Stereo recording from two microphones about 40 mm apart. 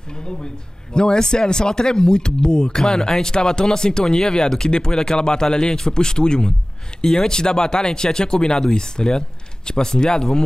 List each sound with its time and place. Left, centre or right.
0.2 s speech: left